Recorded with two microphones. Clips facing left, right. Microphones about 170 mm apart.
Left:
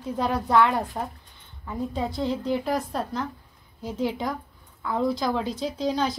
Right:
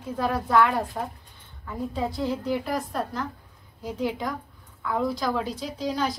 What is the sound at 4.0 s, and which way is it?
A woman's voice, 25° left (ahead or behind).